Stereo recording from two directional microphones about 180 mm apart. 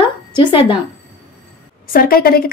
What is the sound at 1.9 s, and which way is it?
Speech, 55° left (ahead or behind).